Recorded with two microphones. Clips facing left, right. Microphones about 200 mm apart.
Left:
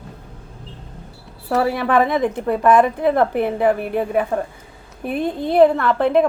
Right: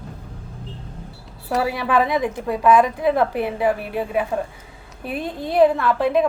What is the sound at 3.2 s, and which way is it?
Speech, 50° left (ahead or behind).